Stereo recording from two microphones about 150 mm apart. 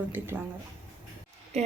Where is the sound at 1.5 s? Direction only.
45° right (ahead or behind).